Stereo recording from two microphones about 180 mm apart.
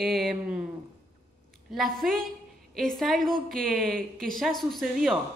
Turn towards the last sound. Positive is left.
turn(degrees=0)  # may be behind; listen again after turning